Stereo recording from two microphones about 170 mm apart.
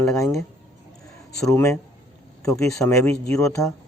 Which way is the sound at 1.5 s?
15° left (ahead or behind).